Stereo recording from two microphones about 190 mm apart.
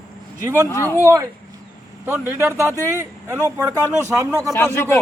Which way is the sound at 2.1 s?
15° right (ahead or behind).